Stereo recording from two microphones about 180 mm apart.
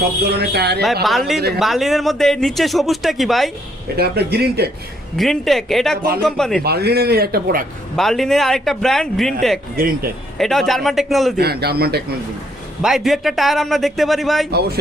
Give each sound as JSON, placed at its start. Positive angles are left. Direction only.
{"t": 0.2, "sound": "a man's voice", "side_deg": -65}
{"t": 1.0, "sound": "a man's voice", "side_deg": 0}
{"t": 3.9, "sound": "a man's voice", "side_deg": -60}
{"t": 5.1, "sound": "a man's voice", "side_deg": 0}
{"t": 6.6, "sound": "a man's voice", "side_deg": -60}
{"t": 7.9, "sound": "a man's voice", "side_deg": 0}
{"t": 9.7, "sound": "speech", "side_deg": -50}
{"t": 10.3, "sound": "a man's voice", "side_deg": 0}
{"t": 11.3, "sound": "a man's voice", "side_deg": -60}
{"t": 12.8, "sound": "a man's voice", "side_deg": 0}